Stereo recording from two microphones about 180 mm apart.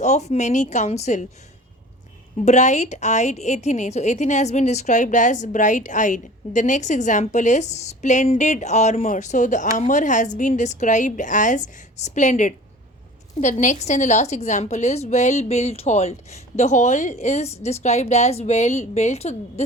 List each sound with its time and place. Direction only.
0.0 s a woman's voice: 40° left (ahead or behind)
2.4 s a woman's voice: 40° left (ahead or behind)